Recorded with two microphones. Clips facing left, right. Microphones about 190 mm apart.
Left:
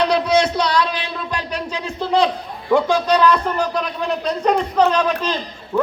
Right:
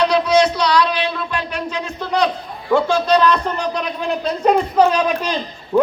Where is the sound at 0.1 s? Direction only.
55° left (ahead or behind).